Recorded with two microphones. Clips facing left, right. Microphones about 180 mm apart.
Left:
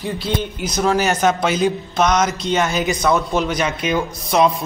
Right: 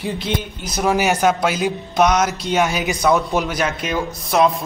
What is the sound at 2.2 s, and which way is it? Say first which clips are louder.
Speech: even; centre (ahead or behind).